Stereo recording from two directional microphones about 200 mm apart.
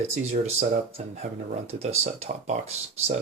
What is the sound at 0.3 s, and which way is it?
Speech, 35° right (ahead or behind).